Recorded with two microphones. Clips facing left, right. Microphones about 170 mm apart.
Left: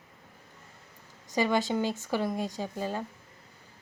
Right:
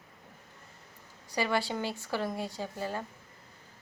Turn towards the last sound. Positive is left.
turn(degrees=15)  # may be behind; listen again after turning